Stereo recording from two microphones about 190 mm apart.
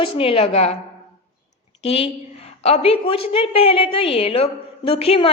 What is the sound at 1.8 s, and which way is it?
A woman's voice, 30° left (ahead or behind).